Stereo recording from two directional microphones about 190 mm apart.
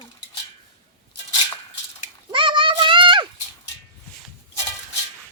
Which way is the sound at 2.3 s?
25° right (ahead or behind).